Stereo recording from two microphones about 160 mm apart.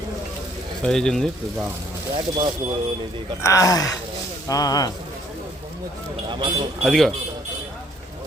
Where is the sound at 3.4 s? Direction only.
20° left (ahead or behind).